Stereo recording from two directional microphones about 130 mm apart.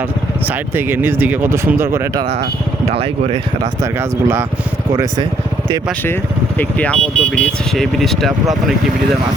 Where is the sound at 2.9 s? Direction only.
50° right (ahead or behind).